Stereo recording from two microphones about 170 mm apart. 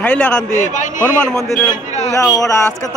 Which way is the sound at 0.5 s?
45° left (ahead or behind).